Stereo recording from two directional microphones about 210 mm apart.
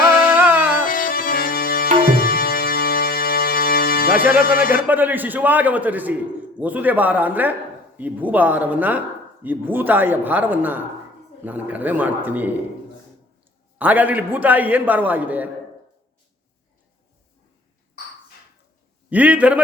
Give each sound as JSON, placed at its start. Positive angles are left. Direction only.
{"t": 0.0, "sound": "music", "side_deg": 45}
{"t": 0.3, "sound": "music", "side_deg": -5}
{"t": 0.9, "sound": "music", "side_deg": 40}
{"t": 4.3, "sound": "speech", "side_deg": 45}
{"t": 4.9, "sound": "a man's voice", "side_deg": -10}
{"t": 13.7, "sound": "a man's voice", "side_deg": -10}
{"t": 19.1, "sound": "a man's voice", "side_deg": -5}